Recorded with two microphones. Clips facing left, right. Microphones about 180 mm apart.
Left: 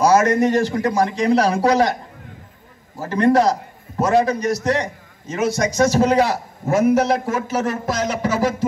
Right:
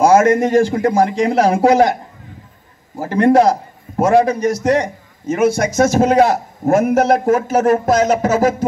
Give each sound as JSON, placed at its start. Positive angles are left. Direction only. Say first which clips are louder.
{"t": 0.0, "sound": "a man's voice", "louder": "right 4 dB", "side_deg": -50}
{"t": 3.0, "sound": "a man's voice", "louder": "right 4 dB", "side_deg": -50}